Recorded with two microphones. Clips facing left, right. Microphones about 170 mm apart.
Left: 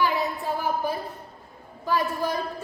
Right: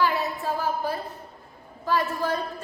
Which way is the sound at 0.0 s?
15° left (ahead or behind).